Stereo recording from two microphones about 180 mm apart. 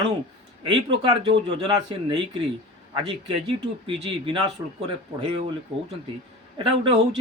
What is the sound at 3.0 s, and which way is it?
Speech, 30° right (ahead or behind).